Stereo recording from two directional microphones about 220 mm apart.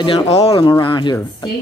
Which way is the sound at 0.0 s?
20° left (ahead or behind).